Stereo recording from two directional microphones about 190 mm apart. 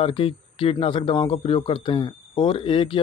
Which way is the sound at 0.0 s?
30° left (ahead or behind).